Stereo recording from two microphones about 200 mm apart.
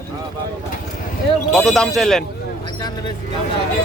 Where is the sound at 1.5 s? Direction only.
Centre (ahead or behind).